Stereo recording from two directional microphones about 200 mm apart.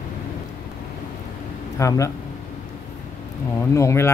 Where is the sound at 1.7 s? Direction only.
15° left (ahead or behind).